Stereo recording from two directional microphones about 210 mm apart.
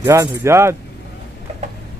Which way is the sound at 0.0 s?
15° right (ahead or behind).